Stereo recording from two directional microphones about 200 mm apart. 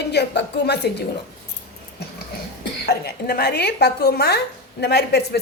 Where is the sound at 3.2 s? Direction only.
55° left (ahead or behind).